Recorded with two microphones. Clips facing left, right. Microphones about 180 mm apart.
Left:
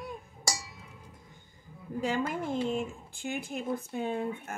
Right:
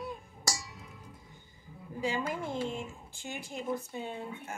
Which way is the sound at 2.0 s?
55° left (ahead or behind).